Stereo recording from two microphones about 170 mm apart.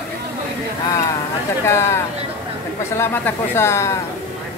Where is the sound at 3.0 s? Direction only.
15° left (ahead or behind).